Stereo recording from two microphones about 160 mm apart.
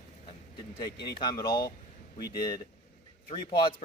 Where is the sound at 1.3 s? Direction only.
25° left (ahead or behind).